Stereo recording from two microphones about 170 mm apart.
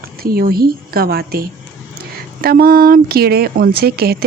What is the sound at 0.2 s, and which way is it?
Speech, 60° right (ahead or behind).